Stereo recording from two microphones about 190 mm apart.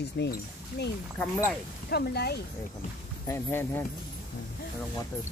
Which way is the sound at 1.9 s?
55° left (ahead or behind).